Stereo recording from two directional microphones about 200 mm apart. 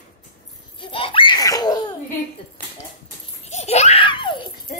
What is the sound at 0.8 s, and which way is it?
Laughter, 25° left (ahead or behind).